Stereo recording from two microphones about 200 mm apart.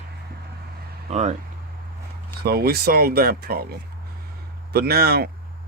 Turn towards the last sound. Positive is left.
turn(degrees=-50)  # may be behind; listen again after turning